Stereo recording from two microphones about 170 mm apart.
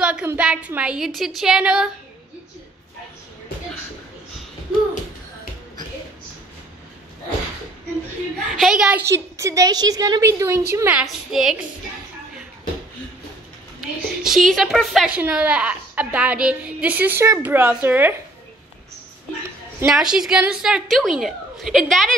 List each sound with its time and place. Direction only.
0.0 s a woman's voice: 10° right (ahead or behind)
8.5 s a woman's voice: 5° right (ahead or behind)
9.0 s a woman's voice: 20° right (ahead or behind); by 11.5 s 5° right (ahead or behind)
13.7 s a woman's voice: centre (ahead or behind)
19.9 s a woman's voice: 5° right (ahead or behind)